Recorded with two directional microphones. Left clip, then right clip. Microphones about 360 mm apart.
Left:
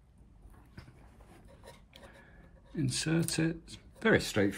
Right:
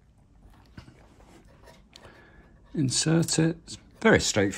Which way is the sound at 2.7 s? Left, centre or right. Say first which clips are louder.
Right 7 dB; centre.